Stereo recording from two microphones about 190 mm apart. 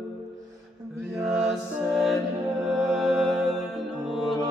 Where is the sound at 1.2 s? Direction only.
Centre (ahead or behind).